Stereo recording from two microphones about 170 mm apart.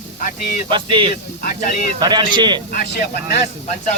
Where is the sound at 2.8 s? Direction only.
65° left (ahead or behind).